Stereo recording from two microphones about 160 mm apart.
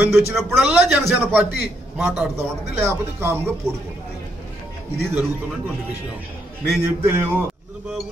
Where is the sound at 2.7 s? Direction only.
15° right (ahead or behind).